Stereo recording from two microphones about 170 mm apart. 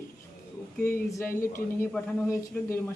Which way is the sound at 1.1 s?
15° left (ahead or behind).